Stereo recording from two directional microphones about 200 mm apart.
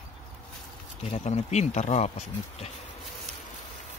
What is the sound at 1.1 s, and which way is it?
Speech, 35° left (ahead or behind).